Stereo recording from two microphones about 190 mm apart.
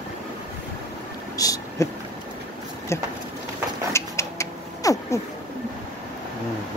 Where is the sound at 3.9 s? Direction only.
15° left (ahead or behind).